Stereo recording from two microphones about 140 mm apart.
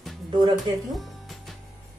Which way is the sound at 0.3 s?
30° right (ahead or behind).